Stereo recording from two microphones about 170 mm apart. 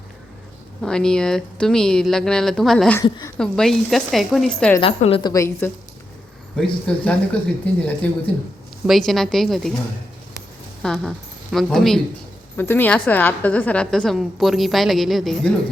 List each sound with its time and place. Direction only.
0.8 s a woman's voice: 5° left (ahead or behind)
3.0 s a woman's voice: 25° left (ahead or behind)
3.3 s a woman's voice: 5° left (ahead or behind)
4.8 s a woman's voice: 35° left (ahead or behind)
5.3 s a woman's voice: 15° left (ahead or behind)
10.8 s a woman's voice: 5° left (ahead or behind)
12.5 s a woman's voice: 10° left (ahead or behind)